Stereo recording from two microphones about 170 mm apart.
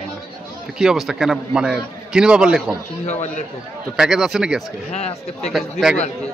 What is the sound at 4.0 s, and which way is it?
Speech, 5° right (ahead or behind).